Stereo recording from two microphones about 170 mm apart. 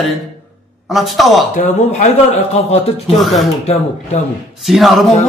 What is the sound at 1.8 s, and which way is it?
Speech, 40° left (ahead or behind).